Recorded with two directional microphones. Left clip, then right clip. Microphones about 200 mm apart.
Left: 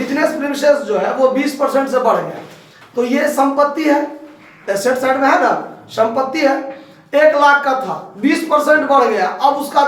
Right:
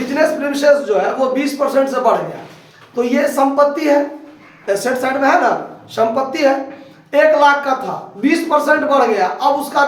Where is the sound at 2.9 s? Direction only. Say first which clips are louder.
Even; 20° right (ahead or behind).